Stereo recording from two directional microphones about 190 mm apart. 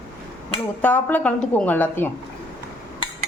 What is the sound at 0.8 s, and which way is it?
Speech, 10° left (ahead or behind).